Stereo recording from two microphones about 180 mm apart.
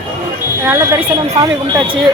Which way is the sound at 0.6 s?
15° right (ahead or behind).